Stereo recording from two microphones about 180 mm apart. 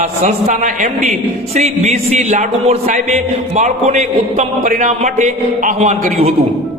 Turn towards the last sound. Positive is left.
turn(degrees=-45)  # may be behind; listen again after turning